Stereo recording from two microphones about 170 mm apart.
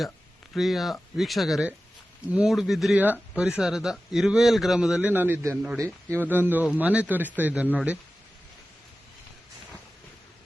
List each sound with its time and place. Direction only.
0.5 s speech: centre (ahead or behind)